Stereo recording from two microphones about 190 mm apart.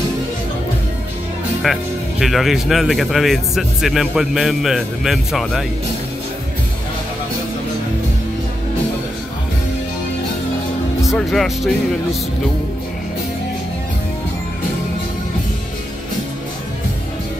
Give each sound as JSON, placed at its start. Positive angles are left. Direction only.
{"t": 1.6, "sound": "speech", "side_deg": 0}
{"t": 11.1, "sound": "speech", "side_deg": 0}